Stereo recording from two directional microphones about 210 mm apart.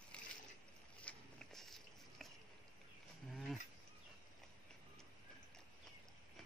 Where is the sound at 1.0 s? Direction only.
Centre (ahead or behind).